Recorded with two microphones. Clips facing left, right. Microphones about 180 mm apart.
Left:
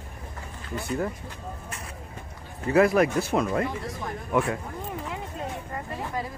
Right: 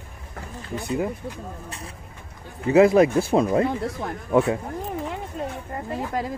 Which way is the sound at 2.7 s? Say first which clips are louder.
Right 5 dB; 25° right (ahead or behind).